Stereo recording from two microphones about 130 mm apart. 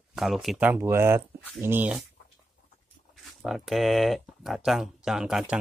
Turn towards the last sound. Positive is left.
turn(degrees=-5)  # may be behind; listen again after turning